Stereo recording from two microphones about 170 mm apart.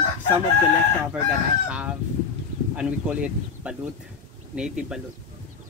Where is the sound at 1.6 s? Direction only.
10° right (ahead or behind).